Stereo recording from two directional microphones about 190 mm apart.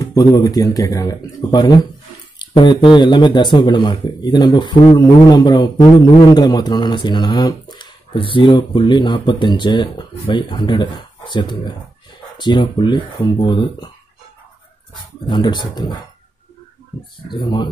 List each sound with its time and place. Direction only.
0.0 s speech: 20° left (ahead or behind)
15.2 s speech: 25° left (ahead or behind)
17.3 s speech: 25° left (ahead or behind)